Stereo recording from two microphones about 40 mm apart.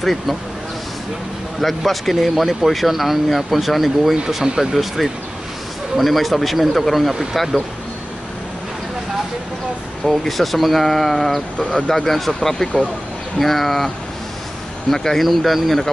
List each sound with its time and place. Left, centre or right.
0.0 s speech: centre
1.8 s speech: centre
10.0 s speech: centre
14.9 s speech: centre